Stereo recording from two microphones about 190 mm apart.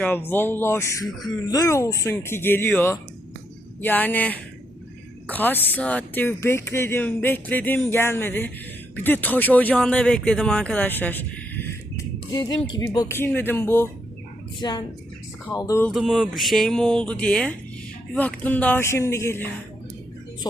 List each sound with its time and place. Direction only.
0.0 s speech: 10° left (ahead or behind)
14.6 s speech: 20° left (ahead or behind)
15.9 s speech: centre (ahead or behind)